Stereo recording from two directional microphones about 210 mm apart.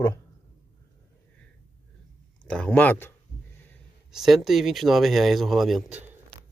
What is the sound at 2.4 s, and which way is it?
Speech, 5° left (ahead or behind).